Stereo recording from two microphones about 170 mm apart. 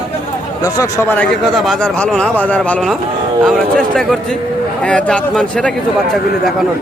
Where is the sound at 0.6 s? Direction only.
15° left (ahead or behind).